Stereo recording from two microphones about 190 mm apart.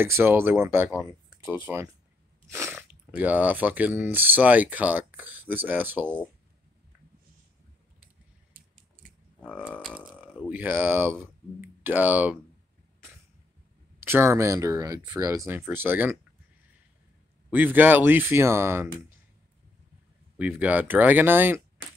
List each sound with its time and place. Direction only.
0.0 s speech: 10° right (ahead or behind)
9.4 s speech: 5° left (ahead or behind)
9.8 s burping: 5° right (ahead or behind)
10.5 s speech: 10° right (ahead or behind)
13.9 s speech: 10° right (ahead or behind)
17.5 s speech: 10° right (ahead or behind)
20.3 s speech: 10° right (ahead or behind)